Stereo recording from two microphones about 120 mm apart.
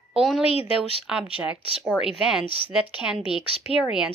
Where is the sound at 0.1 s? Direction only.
5° right (ahead or behind).